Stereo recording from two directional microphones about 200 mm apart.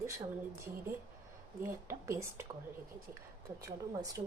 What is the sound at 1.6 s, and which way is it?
Speech, 15° right (ahead or behind).